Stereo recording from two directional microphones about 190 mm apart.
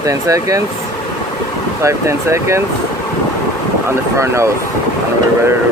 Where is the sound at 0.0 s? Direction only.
15° right (ahead or behind).